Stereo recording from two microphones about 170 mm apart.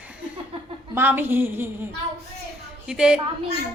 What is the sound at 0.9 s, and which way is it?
Speech, 10° right (ahead or behind).